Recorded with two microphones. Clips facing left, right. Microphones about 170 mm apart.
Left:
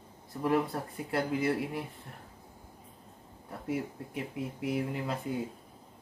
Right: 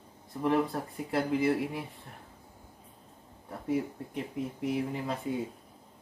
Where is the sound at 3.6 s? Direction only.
5° left (ahead or behind).